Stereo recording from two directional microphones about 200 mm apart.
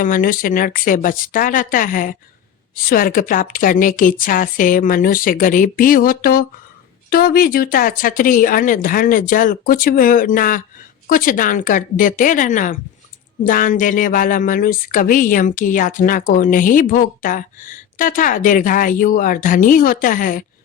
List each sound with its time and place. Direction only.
0.0 s speech: 40° left (ahead or behind)